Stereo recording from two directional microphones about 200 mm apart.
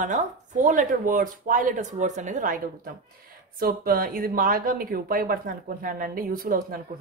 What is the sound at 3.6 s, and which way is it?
Speech, 45° right (ahead or behind).